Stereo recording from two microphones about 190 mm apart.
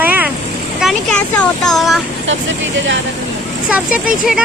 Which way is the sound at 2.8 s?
75° right (ahead or behind).